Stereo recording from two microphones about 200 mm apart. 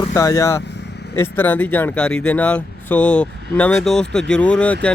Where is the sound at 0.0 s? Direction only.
15° left (ahead or behind).